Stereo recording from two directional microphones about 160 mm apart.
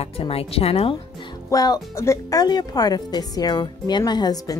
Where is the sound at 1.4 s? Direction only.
25° left (ahead or behind).